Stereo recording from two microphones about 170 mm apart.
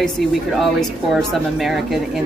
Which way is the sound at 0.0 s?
Centre (ahead or behind).